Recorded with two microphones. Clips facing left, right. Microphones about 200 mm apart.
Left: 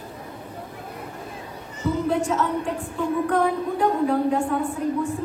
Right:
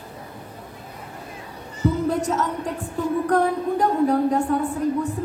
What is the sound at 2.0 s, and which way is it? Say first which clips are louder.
Music: even; 40° right (ahead or behind).